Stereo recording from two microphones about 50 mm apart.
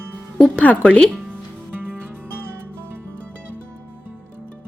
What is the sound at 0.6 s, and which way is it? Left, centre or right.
Speech, left.